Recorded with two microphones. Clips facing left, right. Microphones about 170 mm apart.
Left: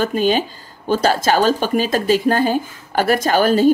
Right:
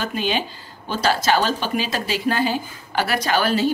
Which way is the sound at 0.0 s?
45° left (ahead or behind).